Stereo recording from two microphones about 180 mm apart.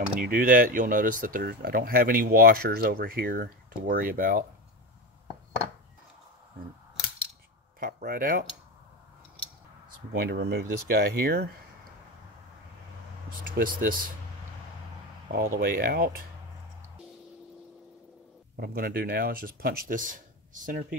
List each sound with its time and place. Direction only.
0.2 s speech: 50° right (ahead or behind)
7.8 s speech: 55° right (ahead or behind)
9.8 s speech: 60° right (ahead or behind)
13.3 s speech: 50° right (ahead or behind)
15.3 s speech: 55° right (ahead or behind)
18.6 s speech: 55° right (ahead or behind)